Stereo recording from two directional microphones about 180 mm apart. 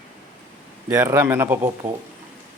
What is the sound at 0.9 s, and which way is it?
Speech, 10° right (ahead or behind).